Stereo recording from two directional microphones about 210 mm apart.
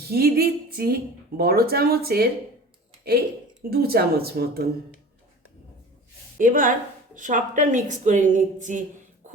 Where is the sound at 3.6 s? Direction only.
45° right (ahead or behind).